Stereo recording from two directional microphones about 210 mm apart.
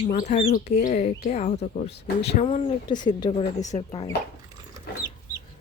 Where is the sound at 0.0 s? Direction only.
35° left (ahead or behind).